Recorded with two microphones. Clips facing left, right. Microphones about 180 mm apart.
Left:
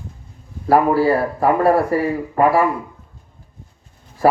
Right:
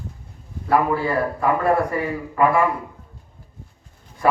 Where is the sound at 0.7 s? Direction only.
35° left (ahead or behind).